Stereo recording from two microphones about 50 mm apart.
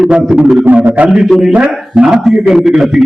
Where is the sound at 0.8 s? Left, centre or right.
Right.